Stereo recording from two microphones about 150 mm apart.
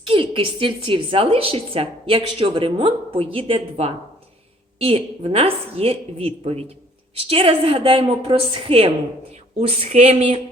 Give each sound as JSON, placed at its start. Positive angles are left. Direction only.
{"t": 0.1, "sound": "a woman's voice", "side_deg": -35}